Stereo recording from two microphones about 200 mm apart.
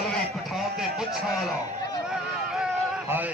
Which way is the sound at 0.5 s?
Centre (ahead or behind).